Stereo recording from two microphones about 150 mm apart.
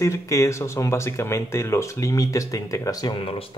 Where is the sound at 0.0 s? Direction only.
20° left (ahead or behind).